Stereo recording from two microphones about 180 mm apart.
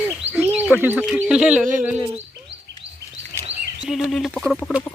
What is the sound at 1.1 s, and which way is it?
Speech, 5° right (ahead or behind).